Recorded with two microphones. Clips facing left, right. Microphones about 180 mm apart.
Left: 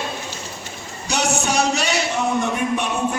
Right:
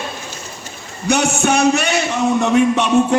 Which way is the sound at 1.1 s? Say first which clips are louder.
Right 6 dB; 60° right (ahead or behind).